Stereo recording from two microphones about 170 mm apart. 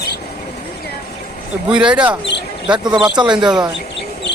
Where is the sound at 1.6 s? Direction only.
5° right (ahead or behind).